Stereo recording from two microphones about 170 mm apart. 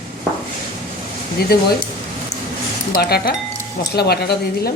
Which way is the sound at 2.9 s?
65° left (ahead or behind).